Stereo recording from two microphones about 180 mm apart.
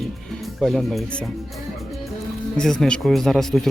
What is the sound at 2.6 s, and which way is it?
Speech, 5° left (ahead or behind).